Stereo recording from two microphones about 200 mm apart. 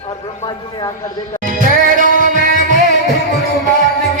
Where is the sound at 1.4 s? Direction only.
45° right (ahead or behind).